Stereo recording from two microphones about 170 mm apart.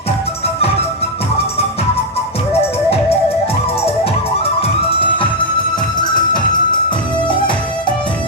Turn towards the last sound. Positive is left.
turn(degrees=30)  # may be behind; listen again after turning